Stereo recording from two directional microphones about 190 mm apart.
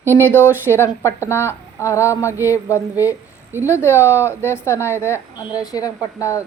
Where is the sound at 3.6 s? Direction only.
15° left (ahead or behind).